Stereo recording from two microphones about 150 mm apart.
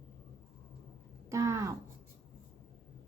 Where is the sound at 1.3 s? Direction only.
20° right (ahead or behind).